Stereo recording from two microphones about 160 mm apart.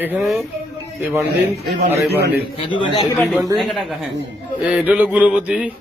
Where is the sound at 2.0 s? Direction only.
90° right.